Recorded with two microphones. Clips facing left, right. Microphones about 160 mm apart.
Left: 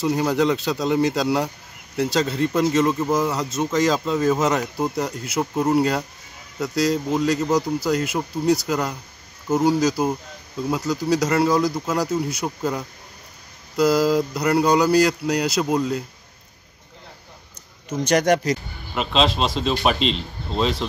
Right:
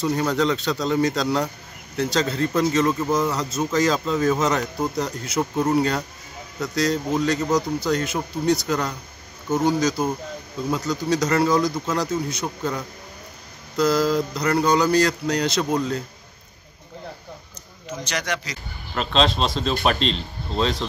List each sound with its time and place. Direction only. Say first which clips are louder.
0.0 s speech: left 2 dB; 5° left (ahead or behind)
18.0 s speech: left 11 dB; 50° left (ahead or behind)
18.9 s speech: even; 5° left (ahead or behind)